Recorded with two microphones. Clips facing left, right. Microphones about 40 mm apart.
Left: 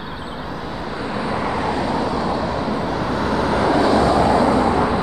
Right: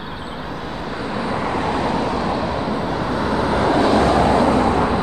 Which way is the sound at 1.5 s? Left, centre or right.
Right.